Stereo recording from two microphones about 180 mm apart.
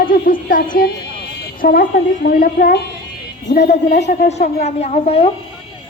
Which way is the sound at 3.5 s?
40° left (ahead or behind).